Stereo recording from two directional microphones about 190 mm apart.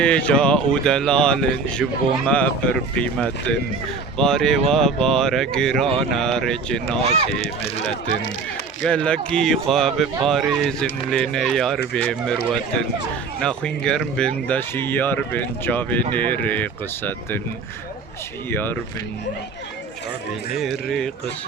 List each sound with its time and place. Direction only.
0.0 s speech: 5° left (ahead or behind)
7.0 s speech: 35° right (ahead or behind)
8.9 s speech: 5° left (ahead or behind)
13.4 s speech: 5° left (ahead or behind)
18.5 s speech: 10° left (ahead or behind)
20.8 s speech: centre (ahead or behind)